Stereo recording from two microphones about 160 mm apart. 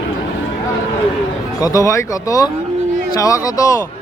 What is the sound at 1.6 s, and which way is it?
Speech, 20° left (ahead or behind).